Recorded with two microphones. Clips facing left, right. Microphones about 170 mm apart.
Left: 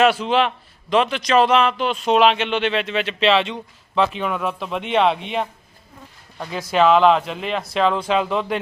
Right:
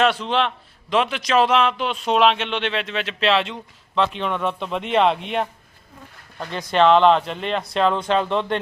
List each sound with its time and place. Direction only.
0.0 s a man's voice: 5° left (ahead or behind)